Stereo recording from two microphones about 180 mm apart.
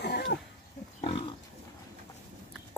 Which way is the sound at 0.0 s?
65° left (ahead or behind).